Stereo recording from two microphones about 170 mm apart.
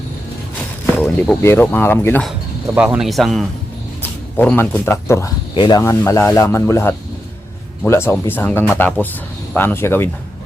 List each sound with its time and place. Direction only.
0.9 s speech: 5° left (ahead or behind)
2.7 s speech: 5° right (ahead or behind)
4.4 s speech: 10° left (ahead or behind)
5.5 s speech: 25° left (ahead or behind)
5.8 s speech: 15° left (ahead or behind)